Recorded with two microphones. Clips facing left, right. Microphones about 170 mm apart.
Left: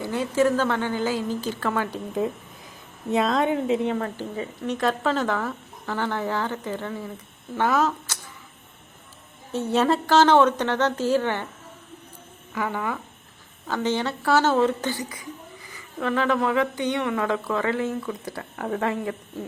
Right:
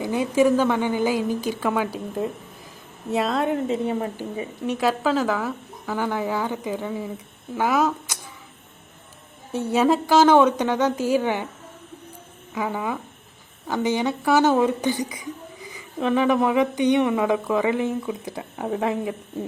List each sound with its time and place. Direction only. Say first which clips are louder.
0.0 s speech: right 3 dB; 15° right (ahead or behind)
3.8 s speech: right 1 dB; 15° right (ahead or behind)
9.5 s speech: right 2 dB; 10° right (ahead or behind)
12.5 s speech: right 1 dB; 15° right (ahead or behind)